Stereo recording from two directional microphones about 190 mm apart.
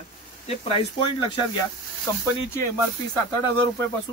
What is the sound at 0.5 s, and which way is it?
Speech, 30° left (ahead or behind).